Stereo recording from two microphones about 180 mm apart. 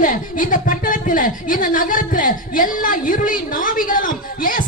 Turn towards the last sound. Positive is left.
turn(degrees=50)  # may be behind; listen again after turning